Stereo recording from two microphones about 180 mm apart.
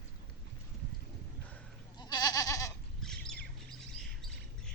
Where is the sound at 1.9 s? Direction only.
20° left (ahead or behind).